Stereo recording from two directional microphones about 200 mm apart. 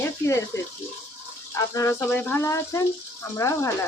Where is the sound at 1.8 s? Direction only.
15° left (ahead or behind).